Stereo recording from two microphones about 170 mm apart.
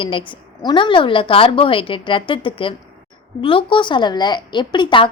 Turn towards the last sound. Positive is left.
turn(degrees=30)  # may be behind; listen again after turning